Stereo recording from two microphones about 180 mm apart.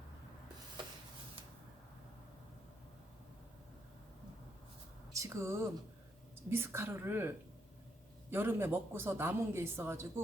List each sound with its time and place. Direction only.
5.1 s a man's voice: 15° right (ahead or behind)